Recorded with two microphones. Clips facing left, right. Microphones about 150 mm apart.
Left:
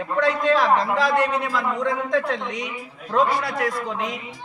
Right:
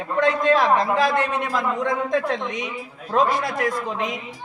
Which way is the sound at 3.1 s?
20° right (ahead or behind).